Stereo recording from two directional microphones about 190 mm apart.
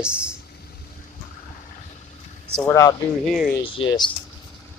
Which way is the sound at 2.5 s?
15° left (ahead or behind).